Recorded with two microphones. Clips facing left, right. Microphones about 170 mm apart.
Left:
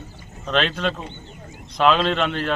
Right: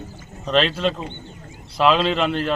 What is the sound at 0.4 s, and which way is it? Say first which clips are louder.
A man's voice: right 3 dB; centre (ahead or behind).